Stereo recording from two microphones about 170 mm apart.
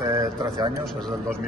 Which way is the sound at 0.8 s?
5° left (ahead or behind).